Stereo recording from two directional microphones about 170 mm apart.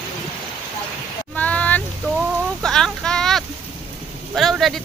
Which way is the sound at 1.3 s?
10° left (ahead or behind).